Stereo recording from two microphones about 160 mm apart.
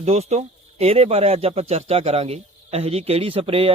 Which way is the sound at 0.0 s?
40° right (ahead or behind).